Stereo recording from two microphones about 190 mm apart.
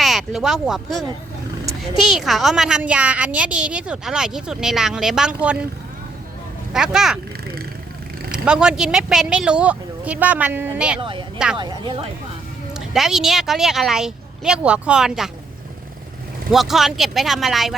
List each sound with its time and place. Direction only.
0.0 s speech: centre (ahead or behind)
2.0 s a woman's voice: centre (ahead or behind)
6.7 s a woman's voice: 5° right (ahead or behind)
8.3 s a woman's voice: 5° right (ahead or behind)
11.0 s speech: 25° right (ahead or behind)
12.7 s a woman's voice: centre (ahead or behind)
16.5 s a woman's voice: centre (ahead or behind)